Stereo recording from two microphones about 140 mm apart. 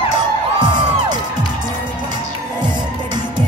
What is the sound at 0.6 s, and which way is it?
Music, 30° right (ahead or behind).